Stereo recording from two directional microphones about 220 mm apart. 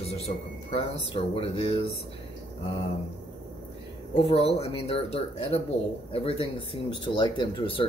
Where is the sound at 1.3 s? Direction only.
25° left (ahead or behind).